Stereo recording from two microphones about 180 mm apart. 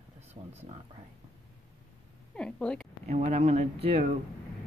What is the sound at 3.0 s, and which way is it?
Speech, 40° right (ahead or behind).